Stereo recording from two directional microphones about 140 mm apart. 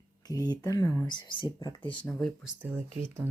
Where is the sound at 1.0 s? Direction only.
30° left (ahead or behind).